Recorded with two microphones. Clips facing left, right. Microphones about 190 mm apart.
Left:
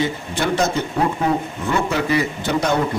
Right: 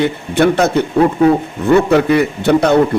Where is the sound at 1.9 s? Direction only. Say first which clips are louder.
Right 8 dB; 60° right (ahead or behind).